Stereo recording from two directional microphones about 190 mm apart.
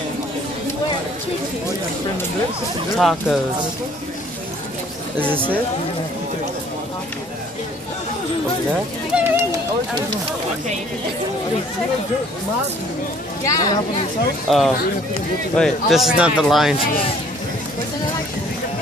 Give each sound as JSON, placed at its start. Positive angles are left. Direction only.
{"t": 3.0, "sound": "speech", "side_deg": 0}
{"t": 9.1, "sound": "speech", "side_deg": -15}
{"t": 13.5, "sound": "speech", "side_deg": 20}
{"t": 14.5, "sound": "speech", "side_deg": 0}